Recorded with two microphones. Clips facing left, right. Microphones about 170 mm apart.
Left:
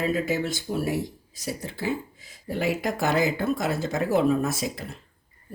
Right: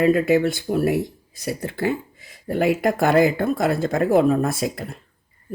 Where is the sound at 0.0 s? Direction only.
60° right (ahead or behind).